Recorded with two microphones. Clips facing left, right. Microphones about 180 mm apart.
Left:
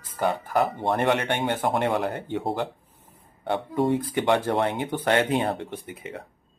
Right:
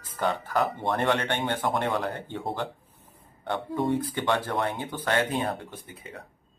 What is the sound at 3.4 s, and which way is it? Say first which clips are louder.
Speech: left 4 dB; 15° left (ahead or behind).